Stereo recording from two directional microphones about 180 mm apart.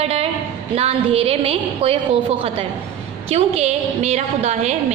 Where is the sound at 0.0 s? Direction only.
35° right (ahead or behind).